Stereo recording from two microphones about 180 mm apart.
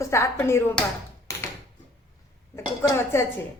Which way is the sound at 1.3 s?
15° left (ahead or behind).